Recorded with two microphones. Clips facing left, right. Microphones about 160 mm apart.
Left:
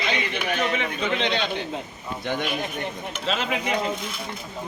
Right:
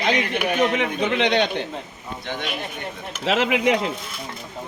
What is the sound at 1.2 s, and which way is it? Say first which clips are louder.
Speech: right 8 dB; 80° right.